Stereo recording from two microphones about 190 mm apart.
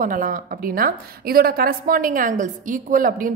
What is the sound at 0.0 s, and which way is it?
A woman's voice, 45° right (ahead or behind).